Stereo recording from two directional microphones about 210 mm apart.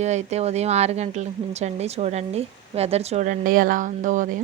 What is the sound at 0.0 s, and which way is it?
Speech, 35° right (ahead or behind).